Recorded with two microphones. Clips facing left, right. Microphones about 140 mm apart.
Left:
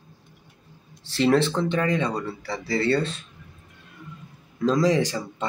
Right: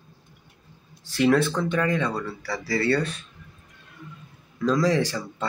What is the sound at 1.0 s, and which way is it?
Speech, 30° left (ahead or behind).